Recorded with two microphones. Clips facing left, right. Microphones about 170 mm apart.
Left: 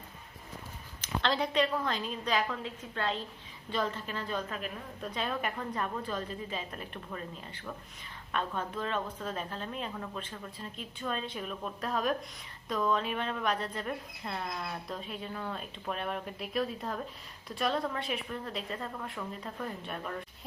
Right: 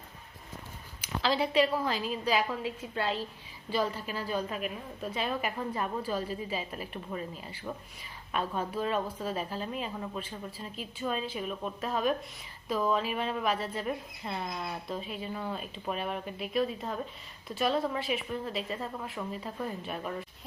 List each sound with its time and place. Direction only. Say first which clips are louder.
1.0 s a woman's voice: right 2 dB; 5° right (ahead or behind)